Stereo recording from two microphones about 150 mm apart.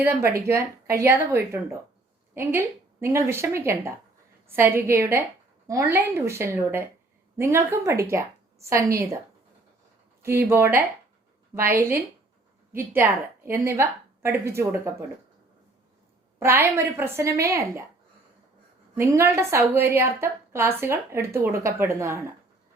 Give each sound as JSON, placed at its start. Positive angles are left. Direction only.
{"t": 0.0, "sound": "a woman's voice", "side_deg": -15}
{"t": 10.5, "sound": "a woman's voice", "side_deg": -15}
{"t": 16.4, "sound": "a woman's voice", "side_deg": -15}
{"t": 18.9, "sound": "a woman's voice", "side_deg": -20}